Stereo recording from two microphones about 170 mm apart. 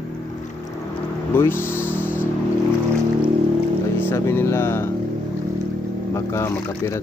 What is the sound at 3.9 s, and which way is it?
Speech, 15° left (ahead or behind).